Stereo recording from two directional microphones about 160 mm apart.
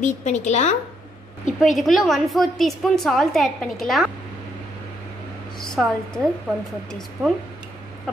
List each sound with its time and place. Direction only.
0.0 s a woman's voice: 50° left (ahead or behind)
1.4 s a woman's voice: centre (ahead or behind)
5.6 s a woman's voice: 5° left (ahead or behind)